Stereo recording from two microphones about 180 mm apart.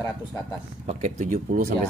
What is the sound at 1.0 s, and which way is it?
Speech, 45° right (ahead or behind).